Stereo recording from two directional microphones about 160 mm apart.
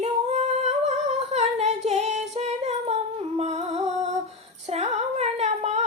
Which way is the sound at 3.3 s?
45° right (ahead or behind).